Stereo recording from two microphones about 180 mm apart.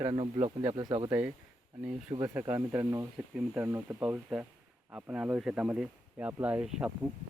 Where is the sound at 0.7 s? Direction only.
25° right (ahead or behind).